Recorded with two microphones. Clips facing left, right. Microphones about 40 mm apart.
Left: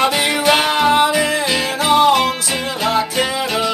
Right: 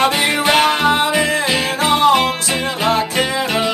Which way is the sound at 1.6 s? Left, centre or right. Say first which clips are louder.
Left 1 dB; right.